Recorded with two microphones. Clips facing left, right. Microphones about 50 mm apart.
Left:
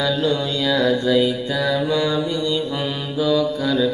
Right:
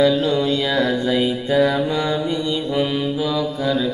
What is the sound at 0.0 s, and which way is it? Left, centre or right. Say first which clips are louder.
Mantra: right 4 dB; centre.